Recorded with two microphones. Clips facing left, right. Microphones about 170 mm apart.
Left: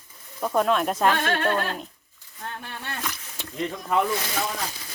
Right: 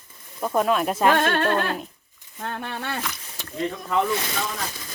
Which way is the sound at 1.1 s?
55° right (ahead or behind).